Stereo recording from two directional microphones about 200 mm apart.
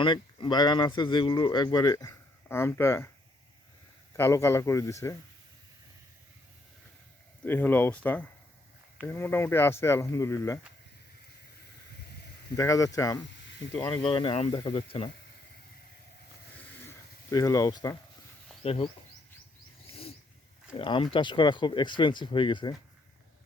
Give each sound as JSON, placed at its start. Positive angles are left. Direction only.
{"t": 0.0, "sound": "speech", "side_deg": 25}
{"t": 4.2, "sound": "speech", "side_deg": 15}
{"t": 7.4, "sound": "speech", "side_deg": 10}
{"t": 12.5, "sound": "speech", "side_deg": 15}
{"t": 13.5, "sound": "snake", "side_deg": 60}
{"t": 13.7, "sound": "speech", "side_deg": 20}
{"t": 16.6, "sound": "a sound", "side_deg": 10}
{"t": 18.6, "sound": "speech", "side_deg": 30}
{"t": 19.9, "sound": "wild animals", "side_deg": 30}
{"t": 20.7, "sound": "speech", "side_deg": 25}